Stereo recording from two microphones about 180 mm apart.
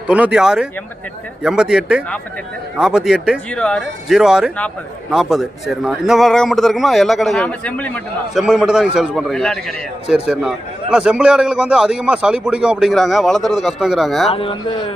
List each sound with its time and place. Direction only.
0.1 s a man's voice: 5° right (ahead or behind)
8.4 s a man's voice: 5° right (ahead or behind)
14.3 s speech: 30° left (ahead or behind)